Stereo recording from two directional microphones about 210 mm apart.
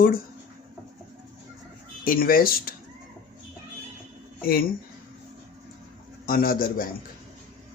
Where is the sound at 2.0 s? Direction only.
45° left (ahead or behind).